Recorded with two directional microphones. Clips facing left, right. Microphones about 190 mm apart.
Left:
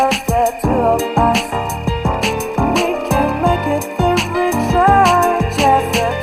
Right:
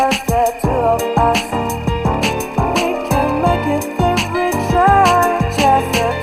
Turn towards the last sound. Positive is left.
turn(degrees=0)  # may be behind; listen again after turning